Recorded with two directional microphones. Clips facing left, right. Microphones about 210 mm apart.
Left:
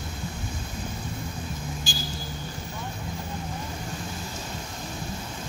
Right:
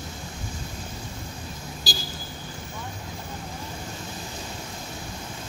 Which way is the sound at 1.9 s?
35° right (ahead or behind).